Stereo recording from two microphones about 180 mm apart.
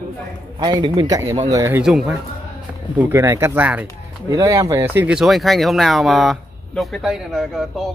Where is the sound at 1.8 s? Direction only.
Centre (ahead or behind).